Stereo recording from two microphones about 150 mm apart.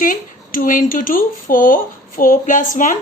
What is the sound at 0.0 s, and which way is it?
A woman's voice, 65° left (ahead or behind).